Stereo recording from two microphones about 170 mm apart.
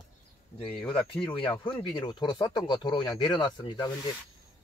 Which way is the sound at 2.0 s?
25° left (ahead or behind).